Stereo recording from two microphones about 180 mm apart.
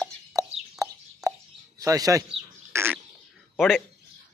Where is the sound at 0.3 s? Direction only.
20° right (ahead or behind).